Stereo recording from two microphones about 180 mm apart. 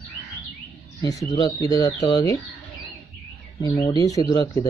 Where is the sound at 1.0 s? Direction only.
20° left (ahead or behind).